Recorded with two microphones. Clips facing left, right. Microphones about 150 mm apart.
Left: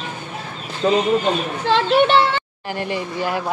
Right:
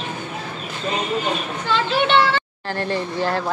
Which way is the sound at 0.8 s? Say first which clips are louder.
Left 9 dB; 90° left.